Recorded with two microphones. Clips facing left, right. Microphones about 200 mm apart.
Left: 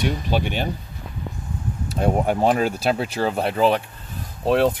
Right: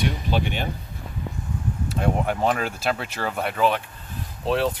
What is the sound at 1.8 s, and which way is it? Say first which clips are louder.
Speech: left 4 dB; 35° left (ahead or behind).